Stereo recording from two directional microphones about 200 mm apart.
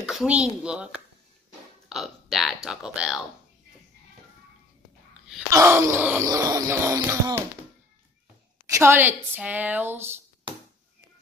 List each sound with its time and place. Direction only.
0.1 s a child's voice: 5° right (ahead or behind)
1.9 s speech: centre (ahead or behind)
5.5 s groan: 15° right (ahead or behind)
8.6 s groan: 15° right (ahead or behind)